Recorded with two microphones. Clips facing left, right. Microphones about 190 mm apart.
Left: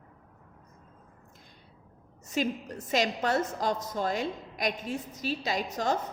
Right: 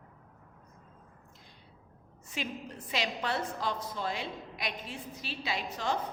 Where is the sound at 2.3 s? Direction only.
45° left (ahead or behind).